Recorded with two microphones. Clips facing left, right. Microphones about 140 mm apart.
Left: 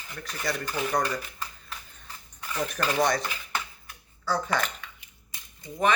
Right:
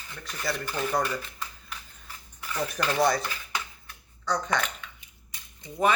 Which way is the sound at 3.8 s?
5° left (ahead or behind).